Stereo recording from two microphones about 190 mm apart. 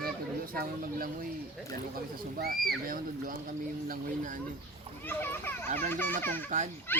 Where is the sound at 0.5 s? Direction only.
50° right (ahead or behind).